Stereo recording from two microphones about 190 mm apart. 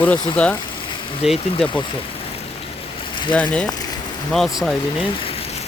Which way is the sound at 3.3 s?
5° left (ahead or behind).